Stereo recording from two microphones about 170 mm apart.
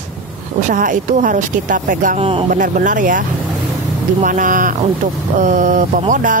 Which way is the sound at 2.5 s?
50° right (ahead or behind).